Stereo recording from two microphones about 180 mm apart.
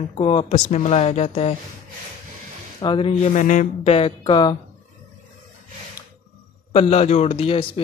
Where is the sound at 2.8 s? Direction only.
30° left (ahead or behind).